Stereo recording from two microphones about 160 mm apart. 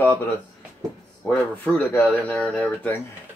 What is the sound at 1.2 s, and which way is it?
Speech, 10° left (ahead or behind).